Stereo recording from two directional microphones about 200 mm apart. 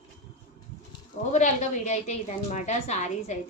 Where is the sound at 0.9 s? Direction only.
35° left (ahead or behind).